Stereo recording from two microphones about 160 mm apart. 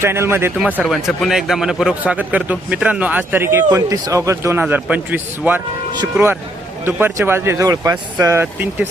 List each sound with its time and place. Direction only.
0.0 s a man's voice: 15° right (ahead or behind)
0.6 s a man's voice: 5° right (ahead or behind)